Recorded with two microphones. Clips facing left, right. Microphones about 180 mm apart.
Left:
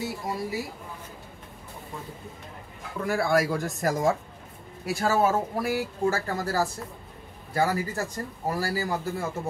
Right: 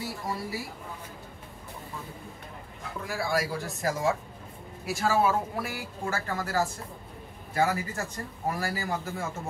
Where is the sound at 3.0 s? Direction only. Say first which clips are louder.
Left 6 dB; 55° left (ahead or behind); by 8.8 s 35° left (ahead or behind).